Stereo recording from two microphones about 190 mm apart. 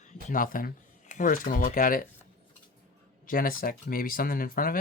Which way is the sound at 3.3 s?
50° left (ahead or behind).